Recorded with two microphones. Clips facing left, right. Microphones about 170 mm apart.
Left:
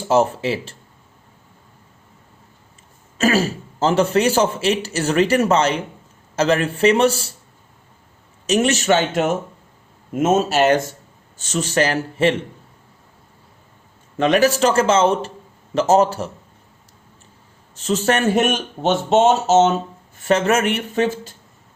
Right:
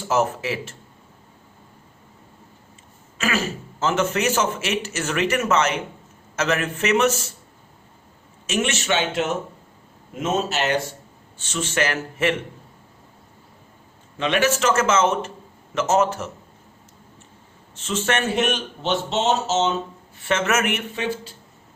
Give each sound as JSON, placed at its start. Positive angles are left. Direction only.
{"t": 0.0, "sound": "a man's voice", "side_deg": 30}
{"t": 3.2, "sound": "a man's voice", "side_deg": 35}
{"t": 8.4, "sound": "a man's voice", "side_deg": 40}
{"t": 14.2, "sound": "a man's voice", "side_deg": 40}
{"t": 17.7, "sound": "a man's voice", "side_deg": 40}